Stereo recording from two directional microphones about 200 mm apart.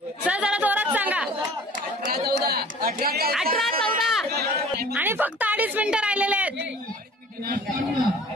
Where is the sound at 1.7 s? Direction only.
45° right (ahead or behind).